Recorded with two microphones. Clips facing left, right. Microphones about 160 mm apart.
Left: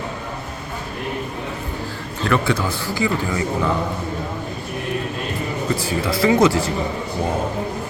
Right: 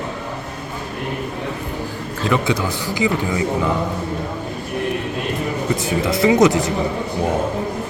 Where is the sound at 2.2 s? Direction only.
15° right (ahead or behind).